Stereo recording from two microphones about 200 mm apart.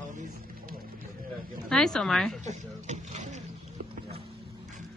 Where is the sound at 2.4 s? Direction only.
35° right (ahead or behind).